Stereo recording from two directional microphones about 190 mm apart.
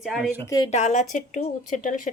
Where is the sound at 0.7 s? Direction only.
40° left (ahead or behind).